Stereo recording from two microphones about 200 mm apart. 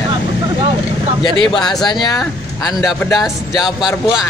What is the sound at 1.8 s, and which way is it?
A man's voice, 20° left (ahead or behind).